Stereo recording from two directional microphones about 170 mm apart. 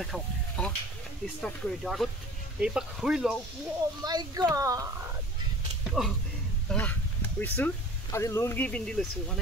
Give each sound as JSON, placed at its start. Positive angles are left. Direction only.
{"t": 0.0, "sound": "speech", "side_deg": 5}
{"t": 4.0, "sound": "speech", "side_deg": -25}
{"t": 5.9, "sound": "speech", "side_deg": 0}